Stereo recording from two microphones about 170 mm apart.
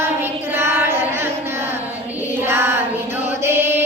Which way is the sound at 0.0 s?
15° right (ahead or behind).